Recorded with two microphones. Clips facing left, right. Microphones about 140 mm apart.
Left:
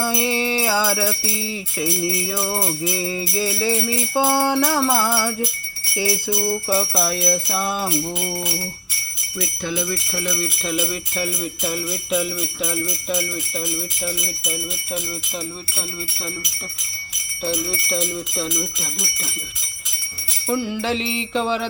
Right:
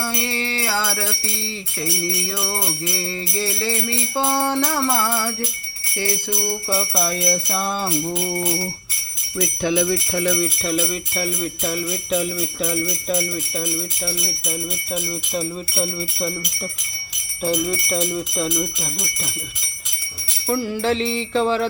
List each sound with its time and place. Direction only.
0.0 s jingle bell: 15° left (ahead or behind)
9.7 s jingle bell: 20° right (ahead or behind)
10.6 s jingle bell: centre (ahead or behind)
17.4 s speech: 10° right (ahead or behind)
20.5 s jingle bell: centre (ahead or behind)